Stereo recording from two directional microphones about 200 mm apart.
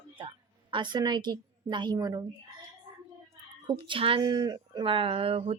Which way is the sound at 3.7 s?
25° right (ahead or behind).